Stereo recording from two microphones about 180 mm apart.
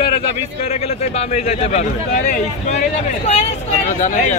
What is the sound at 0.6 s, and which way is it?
A man's voice, 35° left (ahead or behind).